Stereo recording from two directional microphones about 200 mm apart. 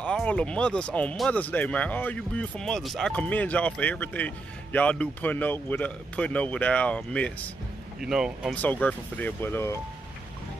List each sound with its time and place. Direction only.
0.0 s speech: 5° left (ahead or behind)
8.5 s speech: 5° left (ahead or behind)